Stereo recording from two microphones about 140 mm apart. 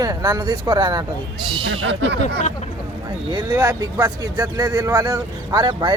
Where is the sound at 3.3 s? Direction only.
30° right (ahead or behind).